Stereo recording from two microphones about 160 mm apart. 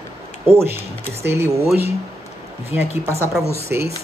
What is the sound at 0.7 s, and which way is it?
Speech, 15° right (ahead or behind).